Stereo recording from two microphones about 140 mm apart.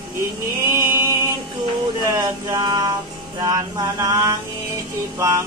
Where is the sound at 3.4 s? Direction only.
25° right (ahead or behind).